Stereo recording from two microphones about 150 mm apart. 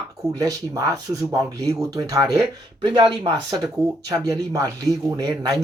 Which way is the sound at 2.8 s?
35° right (ahead or behind).